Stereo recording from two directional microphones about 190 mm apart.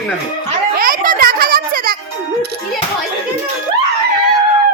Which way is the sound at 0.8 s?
45° right (ahead or behind).